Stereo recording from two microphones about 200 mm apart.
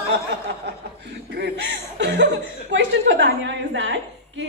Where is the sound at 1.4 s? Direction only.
60° right (ahead or behind).